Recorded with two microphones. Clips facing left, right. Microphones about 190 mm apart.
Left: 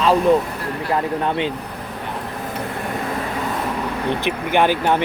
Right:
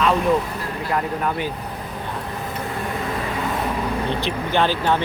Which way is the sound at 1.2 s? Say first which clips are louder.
Left 3 dB; 30° left (ahead or behind).